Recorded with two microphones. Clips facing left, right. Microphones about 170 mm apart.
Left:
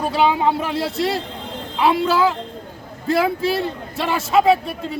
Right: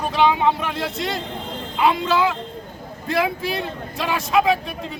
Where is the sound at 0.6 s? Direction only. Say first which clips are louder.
Left 4 dB; 35° left (ahead or behind).